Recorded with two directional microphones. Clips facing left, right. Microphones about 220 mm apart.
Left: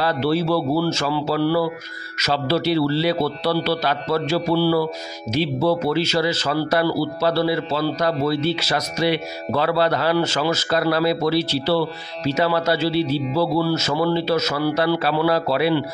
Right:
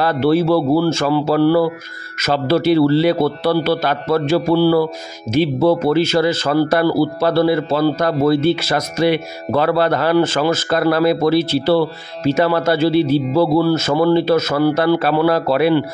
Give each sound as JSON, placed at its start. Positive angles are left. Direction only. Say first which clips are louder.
{"t": 0.0, "sound": "speech", "louder": "right 5 dB", "side_deg": -50}